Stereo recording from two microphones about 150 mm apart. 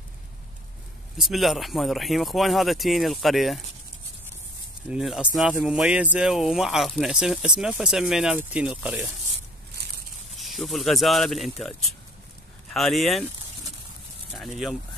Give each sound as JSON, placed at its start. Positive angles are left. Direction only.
{"t": 1.1, "sound": "speech", "side_deg": 0}
{"t": 4.8, "sound": "speech", "side_deg": -5}
{"t": 10.3, "sound": "speech", "side_deg": 0}
{"t": 14.3, "sound": "speech", "side_deg": 0}